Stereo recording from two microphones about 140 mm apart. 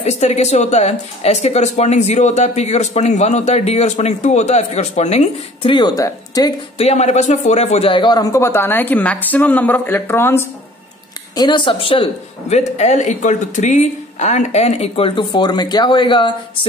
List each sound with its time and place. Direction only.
0.0 s speech: 55° left (ahead or behind)
5.6 s speech: 35° left (ahead or behind)
6.8 s speech: 50° left (ahead or behind); by 10.4 s 15° left (ahead or behind)
11.3 s speech: 35° left (ahead or behind)
12.4 s speech: 55° left (ahead or behind); by 16.3 s 35° left (ahead or behind)